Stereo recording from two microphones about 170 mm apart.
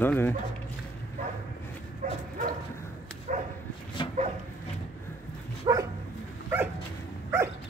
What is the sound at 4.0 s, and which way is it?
Dog, 30° left (ahead or behind).